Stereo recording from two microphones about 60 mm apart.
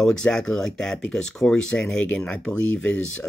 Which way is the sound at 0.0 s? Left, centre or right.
Centre.